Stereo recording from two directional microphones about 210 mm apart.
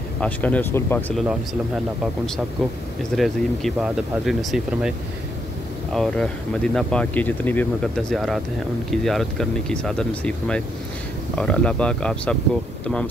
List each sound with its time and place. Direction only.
0.2 s speech: 5° left (ahead or behind)
3.2 s speech: centre (ahead or behind)
5.9 s speech: 5° left (ahead or behind)